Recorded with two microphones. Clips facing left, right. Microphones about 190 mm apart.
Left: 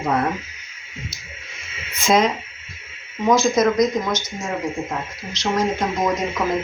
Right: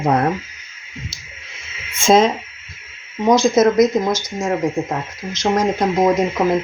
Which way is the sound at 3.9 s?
25° right (ahead or behind).